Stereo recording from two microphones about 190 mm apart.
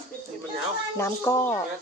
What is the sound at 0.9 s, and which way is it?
Speech, 15° left (ahead or behind).